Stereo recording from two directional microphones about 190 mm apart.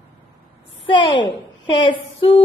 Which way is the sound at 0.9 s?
25° left (ahead or behind).